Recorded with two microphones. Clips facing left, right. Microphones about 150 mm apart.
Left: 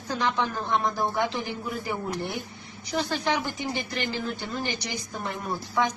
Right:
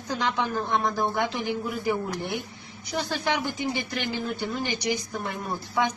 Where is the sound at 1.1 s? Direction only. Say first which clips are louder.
Right 1 dB; 15° right (ahead or behind).